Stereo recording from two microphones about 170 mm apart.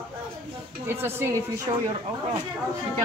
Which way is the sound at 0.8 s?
15° right (ahead or behind).